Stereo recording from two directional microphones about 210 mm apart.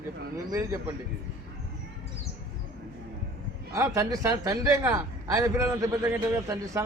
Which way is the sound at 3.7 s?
15° right (ahead or behind).